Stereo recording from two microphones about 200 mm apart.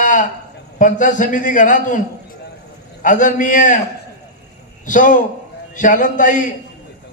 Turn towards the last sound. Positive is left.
turn(degrees=40)  # may be behind; listen again after turning